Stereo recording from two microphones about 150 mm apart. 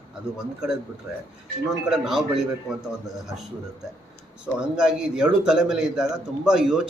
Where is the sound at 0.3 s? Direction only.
5° right (ahead or behind).